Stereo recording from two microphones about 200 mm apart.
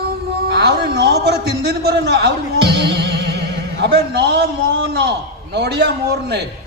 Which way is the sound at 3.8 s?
55° right (ahead or behind).